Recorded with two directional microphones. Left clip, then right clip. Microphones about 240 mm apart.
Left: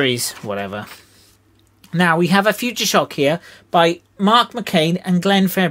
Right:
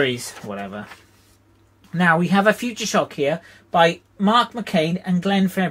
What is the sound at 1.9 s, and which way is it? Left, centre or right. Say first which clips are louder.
Speech: left 2 dB; left.